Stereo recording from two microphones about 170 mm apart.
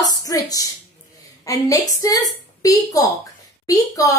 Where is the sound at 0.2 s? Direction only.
20° left (ahead or behind).